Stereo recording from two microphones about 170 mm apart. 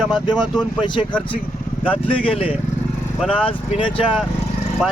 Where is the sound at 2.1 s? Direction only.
30° left (ahead or behind).